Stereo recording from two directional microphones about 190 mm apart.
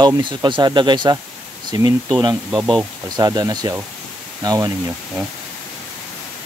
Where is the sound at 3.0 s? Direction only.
20° right (ahead or behind).